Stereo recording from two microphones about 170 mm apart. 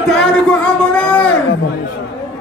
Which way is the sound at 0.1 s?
5° left (ahead or behind).